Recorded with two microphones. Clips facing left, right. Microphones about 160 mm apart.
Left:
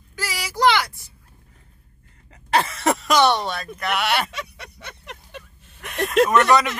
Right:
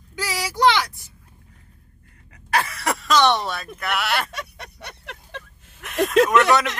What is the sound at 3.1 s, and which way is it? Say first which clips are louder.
Speech: even; 10° left (ahead or behind).